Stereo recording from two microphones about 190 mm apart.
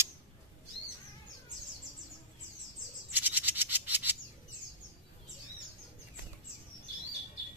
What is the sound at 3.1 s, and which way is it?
Frog, 10° right (ahead or behind).